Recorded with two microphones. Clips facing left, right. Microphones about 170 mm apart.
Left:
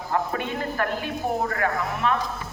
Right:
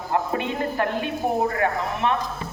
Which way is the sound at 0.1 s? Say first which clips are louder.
Right 2 dB; 20° right (ahead or behind).